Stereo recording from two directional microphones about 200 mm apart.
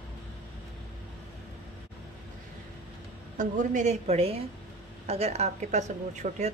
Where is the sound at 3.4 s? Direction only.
40° right (ahead or behind).